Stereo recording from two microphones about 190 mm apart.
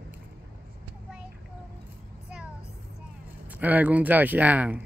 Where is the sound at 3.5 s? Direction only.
10° right (ahead or behind).